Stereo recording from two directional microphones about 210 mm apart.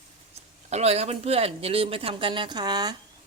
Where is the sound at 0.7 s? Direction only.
30° right (ahead or behind).